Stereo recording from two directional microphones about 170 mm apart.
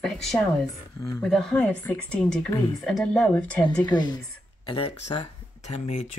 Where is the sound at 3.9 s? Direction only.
25° left (ahead or behind).